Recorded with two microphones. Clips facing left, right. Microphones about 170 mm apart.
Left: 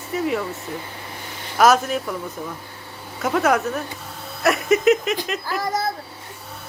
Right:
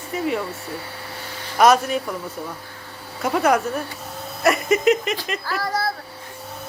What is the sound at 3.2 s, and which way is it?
Speech, centre (ahead or behind).